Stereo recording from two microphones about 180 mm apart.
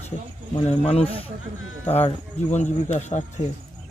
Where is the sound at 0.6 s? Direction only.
35° left (ahead or behind).